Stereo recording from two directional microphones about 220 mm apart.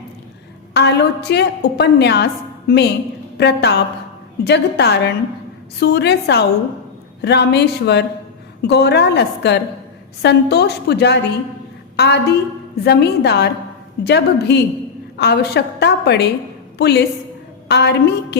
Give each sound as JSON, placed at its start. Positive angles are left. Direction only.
{"t": 0.7, "sound": "a woman's voice", "side_deg": 50}